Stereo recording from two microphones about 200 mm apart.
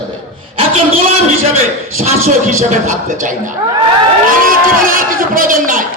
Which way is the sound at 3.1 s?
40° right (ahead or behind).